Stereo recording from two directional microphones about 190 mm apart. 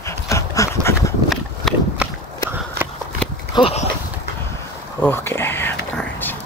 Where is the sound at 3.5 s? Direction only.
30° left (ahead or behind).